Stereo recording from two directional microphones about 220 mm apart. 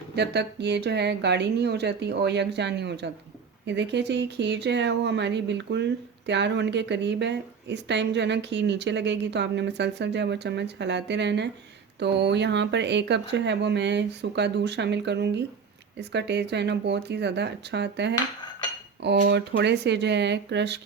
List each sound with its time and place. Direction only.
0.2 s speech: 50° right (ahead or behind)